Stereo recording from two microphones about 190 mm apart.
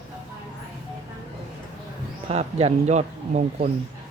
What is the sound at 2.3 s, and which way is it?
Speech, 35° right (ahead or behind).